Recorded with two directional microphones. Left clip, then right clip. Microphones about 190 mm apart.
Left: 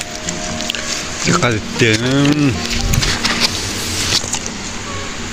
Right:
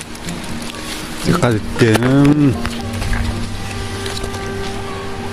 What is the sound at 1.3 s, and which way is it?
Speech, 25° right (ahead or behind).